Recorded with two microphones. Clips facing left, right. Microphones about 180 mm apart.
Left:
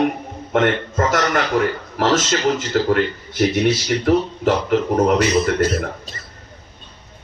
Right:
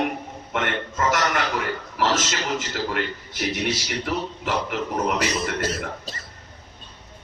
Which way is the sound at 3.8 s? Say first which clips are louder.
Left 10 dB; 50° left (ahead or behind).